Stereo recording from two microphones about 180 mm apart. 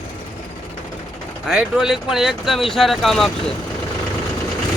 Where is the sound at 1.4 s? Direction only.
5° right (ahead or behind).